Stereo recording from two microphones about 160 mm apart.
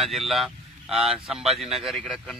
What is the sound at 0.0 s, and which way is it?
Speech, centre (ahead or behind).